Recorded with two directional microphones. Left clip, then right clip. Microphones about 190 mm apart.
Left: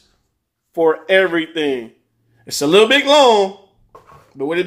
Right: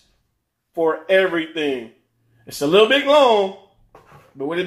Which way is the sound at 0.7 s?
40° left (ahead or behind).